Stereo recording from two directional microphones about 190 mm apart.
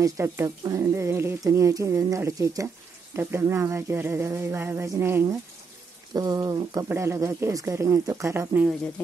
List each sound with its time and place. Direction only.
0.0 s speech: 15° right (ahead or behind)